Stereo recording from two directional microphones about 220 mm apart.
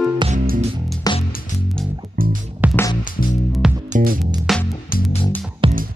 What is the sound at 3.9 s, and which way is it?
Music, 40° right (ahead or behind).